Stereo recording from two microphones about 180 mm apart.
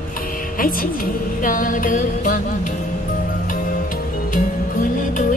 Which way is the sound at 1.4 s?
50° left (ahead or behind).